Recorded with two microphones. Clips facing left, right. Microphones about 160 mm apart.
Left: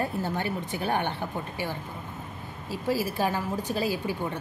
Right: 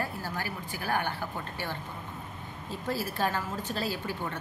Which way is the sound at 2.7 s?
10° left (ahead or behind).